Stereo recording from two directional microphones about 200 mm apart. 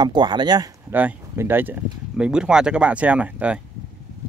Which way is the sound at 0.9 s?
10° right (ahead or behind).